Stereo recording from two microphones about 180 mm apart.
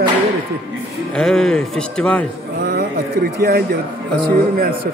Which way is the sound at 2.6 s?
55° right (ahead or behind).